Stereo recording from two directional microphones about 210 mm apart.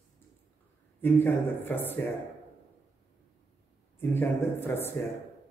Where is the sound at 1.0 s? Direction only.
10° left (ahead or behind).